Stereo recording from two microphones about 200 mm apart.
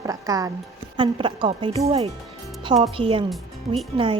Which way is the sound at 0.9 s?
25° right (ahead or behind).